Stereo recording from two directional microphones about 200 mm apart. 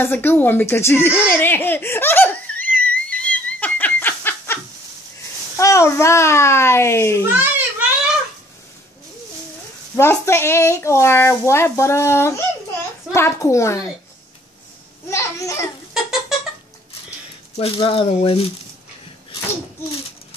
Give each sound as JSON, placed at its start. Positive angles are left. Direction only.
{"t": 0.0, "sound": "a sound", "side_deg": 10}
{"t": 5.6, "sound": "a woman's voice", "side_deg": 15}
{"t": 9.9, "sound": "a woman's voice", "side_deg": 15}
{"t": 15.0, "sound": "children playing", "side_deg": 15}
{"t": 15.9, "sound": "cat", "side_deg": 0}
{"t": 17.6, "sound": "speech", "side_deg": 25}